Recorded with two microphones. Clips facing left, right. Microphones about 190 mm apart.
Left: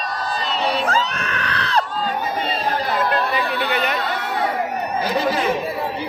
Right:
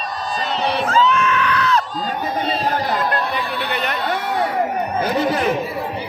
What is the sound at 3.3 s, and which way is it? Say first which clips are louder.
Chatter: left 2 dB; centre (ahead or behind).